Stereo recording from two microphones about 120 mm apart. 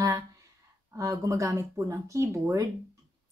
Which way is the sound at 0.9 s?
25° right (ahead or behind).